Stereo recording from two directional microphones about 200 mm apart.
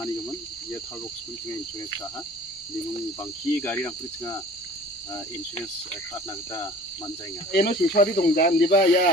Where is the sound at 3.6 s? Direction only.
10° left (ahead or behind).